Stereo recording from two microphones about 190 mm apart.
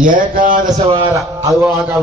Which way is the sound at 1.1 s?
15° right (ahead or behind).